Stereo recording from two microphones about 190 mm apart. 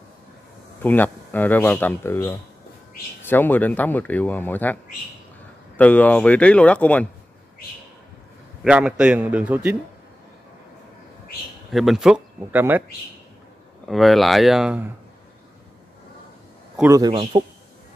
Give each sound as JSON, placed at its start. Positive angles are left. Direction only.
{"t": 0.8, "sound": "speech", "side_deg": 10}
{"t": 5.8, "sound": "speech", "side_deg": 5}
{"t": 8.6, "sound": "a man's voice", "side_deg": -5}
{"t": 11.7, "sound": "a man's voice", "side_deg": 0}
{"t": 13.8, "sound": "a man's voice", "side_deg": 0}
{"t": 16.9, "sound": "a man's voice", "side_deg": -20}